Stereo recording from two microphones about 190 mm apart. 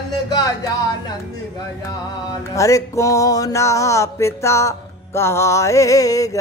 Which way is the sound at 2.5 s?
15° left (ahead or behind).